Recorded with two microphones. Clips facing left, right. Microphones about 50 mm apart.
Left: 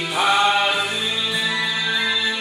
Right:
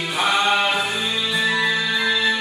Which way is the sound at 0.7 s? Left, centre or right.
Centre.